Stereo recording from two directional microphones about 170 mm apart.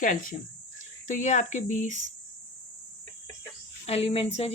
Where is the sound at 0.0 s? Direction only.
50° left (ahead or behind).